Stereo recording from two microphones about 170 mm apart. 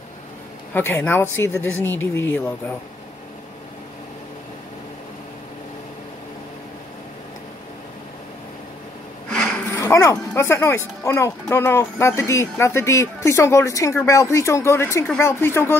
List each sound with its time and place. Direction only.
0.7 s speech: 10° left (ahead or behind)
9.3 s a sound: 5° left (ahead or behind)
9.8 s speech: 15° left (ahead or behind)